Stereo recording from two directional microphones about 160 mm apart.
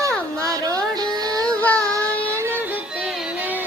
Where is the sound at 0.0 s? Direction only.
20° right (ahead or behind).